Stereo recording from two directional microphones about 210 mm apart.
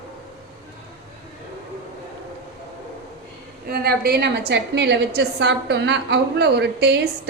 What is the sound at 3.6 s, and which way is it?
A woman's voice, 45° right (ahead or behind).